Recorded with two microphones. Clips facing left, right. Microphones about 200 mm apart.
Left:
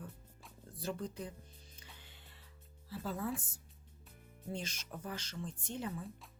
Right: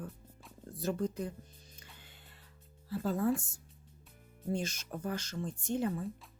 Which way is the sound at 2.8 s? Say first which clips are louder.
Right 7 dB; 50° right (ahead or behind).